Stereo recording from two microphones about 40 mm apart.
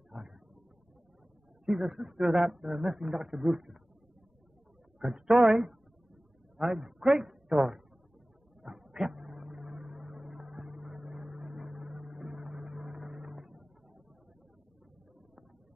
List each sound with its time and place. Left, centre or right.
0.1 s a sound: centre
1.7 s speech: centre
4.9 s speech: centre
8.6 s vehicle: centre